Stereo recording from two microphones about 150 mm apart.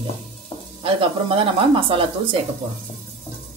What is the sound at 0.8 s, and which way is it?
Speech, 35° right (ahead or behind).